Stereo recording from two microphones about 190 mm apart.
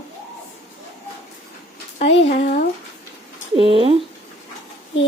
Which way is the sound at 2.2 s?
35° left (ahead or behind).